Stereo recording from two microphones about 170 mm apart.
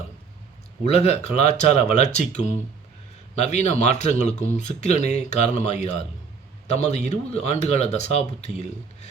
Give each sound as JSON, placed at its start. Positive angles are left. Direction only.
{"t": 0.9, "sound": "speech", "side_deg": 40}